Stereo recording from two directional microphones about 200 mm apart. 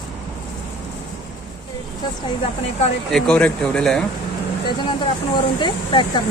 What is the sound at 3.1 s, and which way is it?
Speech, 5° left (ahead or behind).